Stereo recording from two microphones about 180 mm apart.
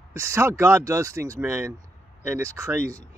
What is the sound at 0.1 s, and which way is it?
Speech, 15° right (ahead or behind).